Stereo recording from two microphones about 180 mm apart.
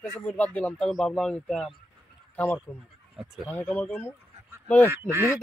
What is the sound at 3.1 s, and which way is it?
Speech, 5° right (ahead or behind).